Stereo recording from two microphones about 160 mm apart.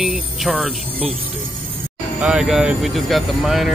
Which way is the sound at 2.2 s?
5° right (ahead or behind).